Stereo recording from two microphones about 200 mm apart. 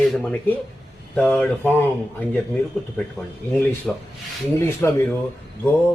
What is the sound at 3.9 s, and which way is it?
Speech, 5° left (ahead or behind).